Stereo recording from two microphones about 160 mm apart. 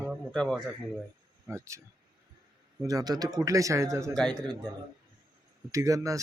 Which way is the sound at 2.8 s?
25° right (ahead or behind).